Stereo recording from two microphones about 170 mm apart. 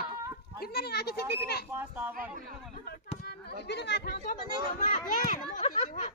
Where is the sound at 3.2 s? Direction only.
70° left (ahead or behind).